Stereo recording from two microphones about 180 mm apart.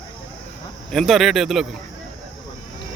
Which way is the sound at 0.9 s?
Centre (ahead or behind).